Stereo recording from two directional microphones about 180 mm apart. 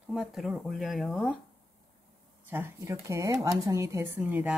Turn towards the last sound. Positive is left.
turn(degrees=-5)  # may be behind; listen again after turning